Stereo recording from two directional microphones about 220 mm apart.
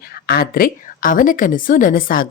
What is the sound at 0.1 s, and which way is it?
A woman's voice, 45° left (ahead or behind).